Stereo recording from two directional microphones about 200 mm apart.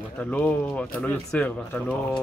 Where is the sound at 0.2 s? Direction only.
5° left (ahead or behind).